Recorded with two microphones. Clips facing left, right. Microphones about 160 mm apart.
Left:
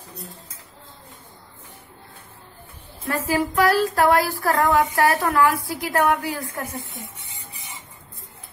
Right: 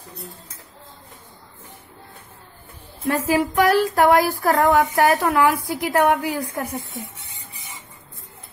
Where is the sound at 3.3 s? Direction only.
20° right (ahead or behind).